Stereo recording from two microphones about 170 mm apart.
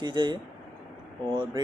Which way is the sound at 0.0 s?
30° right (ahead or behind).